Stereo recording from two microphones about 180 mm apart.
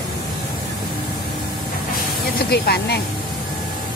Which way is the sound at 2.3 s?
60° left (ahead or behind).